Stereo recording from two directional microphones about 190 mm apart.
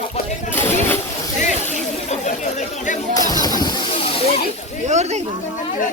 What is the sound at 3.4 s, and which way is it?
Speech, 20° left (ahead or behind).